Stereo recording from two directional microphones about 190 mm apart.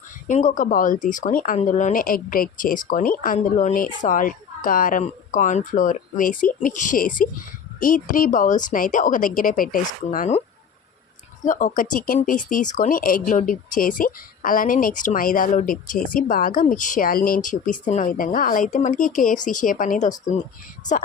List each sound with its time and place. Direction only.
0.3 s speech: 40° left (ahead or behind)
11.4 s speech: 45° left (ahead or behind)